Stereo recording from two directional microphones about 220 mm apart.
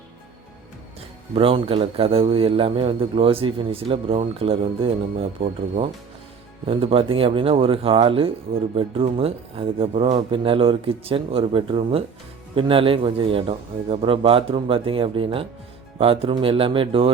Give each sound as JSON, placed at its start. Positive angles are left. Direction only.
{"t": 1.4, "sound": "a man's voice", "side_deg": -25}